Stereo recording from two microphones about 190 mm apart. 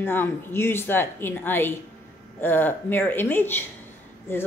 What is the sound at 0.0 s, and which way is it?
A woman's voice, 10° left (ahead or behind).